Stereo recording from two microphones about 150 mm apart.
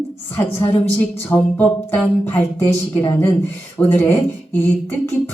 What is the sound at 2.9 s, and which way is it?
Speech, 30° left (ahead or behind).